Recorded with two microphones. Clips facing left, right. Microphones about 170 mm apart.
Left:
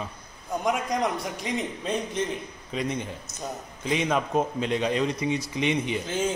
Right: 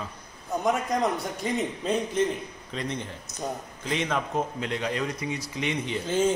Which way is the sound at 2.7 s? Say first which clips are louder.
Left 3 dB; 15° left (ahead or behind).